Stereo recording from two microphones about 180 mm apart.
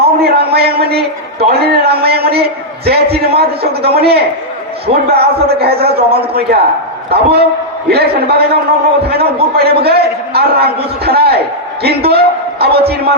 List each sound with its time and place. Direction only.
0.0 s a man's voice: 60° right (ahead or behind)